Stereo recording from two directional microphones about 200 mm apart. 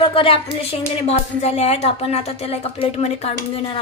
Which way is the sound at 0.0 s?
25° left (ahead or behind).